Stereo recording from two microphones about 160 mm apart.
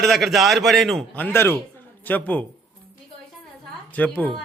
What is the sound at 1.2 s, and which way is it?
Speech, 15° left (ahead or behind).